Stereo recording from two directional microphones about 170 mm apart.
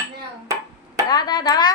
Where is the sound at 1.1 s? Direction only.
25° left (ahead or behind).